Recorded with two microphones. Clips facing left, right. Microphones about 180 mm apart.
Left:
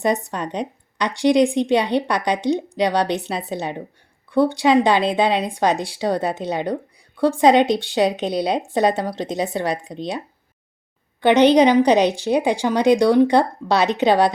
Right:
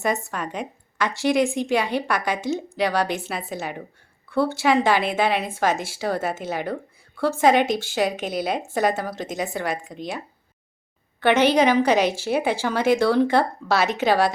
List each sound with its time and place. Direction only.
0.3 s a woman's voice: 20° left (ahead or behind)
11.2 s a woman's voice: 15° left (ahead or behind)